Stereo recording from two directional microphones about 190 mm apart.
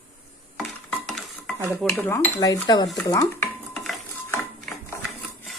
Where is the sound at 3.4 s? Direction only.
Centre (ahead or behind).